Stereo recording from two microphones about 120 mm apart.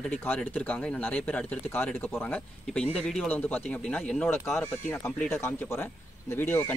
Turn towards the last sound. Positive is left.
turn(degrees=15)  # may be behind; listen again after turning